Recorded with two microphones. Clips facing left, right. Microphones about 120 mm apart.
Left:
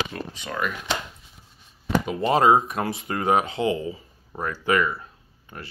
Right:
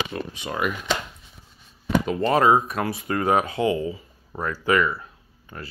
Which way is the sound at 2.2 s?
20° left (ahead or behind).